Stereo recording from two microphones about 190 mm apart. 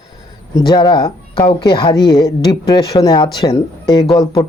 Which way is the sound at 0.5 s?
25° left (ahead or behind).